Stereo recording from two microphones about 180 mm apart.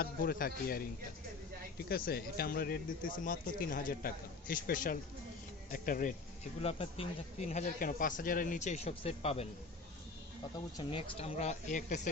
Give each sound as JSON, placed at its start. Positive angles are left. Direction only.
{"t": 0.0, "sound": "a man's voice", "side_deg": 55}
{"t": 1.9, "sound": "speech", "side_deg": 55}
{"t": 6.6, "sound": "speech", "side_deg": 35}
{"t": 10.8, "sound": "speech", "side_deg": 30}